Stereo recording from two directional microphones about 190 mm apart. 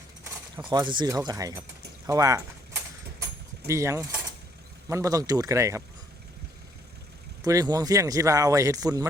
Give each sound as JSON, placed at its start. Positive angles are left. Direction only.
{"t": 0.5, "sound": "speech", "side_deg": -20}
{"t": 3.7, "sound": "speech", "side_deg": -15}
{"t": 7.4, "sound": "speech", "side_deg": -20}